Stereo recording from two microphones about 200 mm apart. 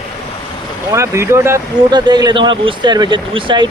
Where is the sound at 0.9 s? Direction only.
15° right (ahead or behind).